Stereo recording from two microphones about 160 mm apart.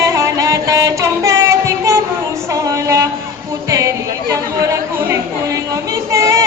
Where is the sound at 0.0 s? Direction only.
20° right (ahead or behind).